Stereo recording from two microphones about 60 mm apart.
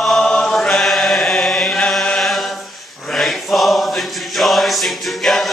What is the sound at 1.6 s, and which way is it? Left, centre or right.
Chant, centre.